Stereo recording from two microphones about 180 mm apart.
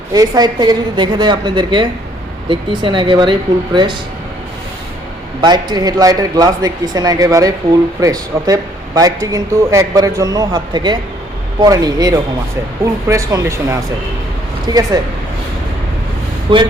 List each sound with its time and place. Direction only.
0.1 s a man's voice: 20° right (ahead or behind)
5.4 s a man's voice: 25° right (ahead or behind)
16.5 s a man's voice: 25° right (ahead or behind)